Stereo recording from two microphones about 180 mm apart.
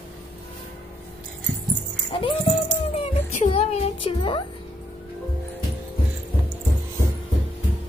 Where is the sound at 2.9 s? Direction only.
35° left (ahead or behind).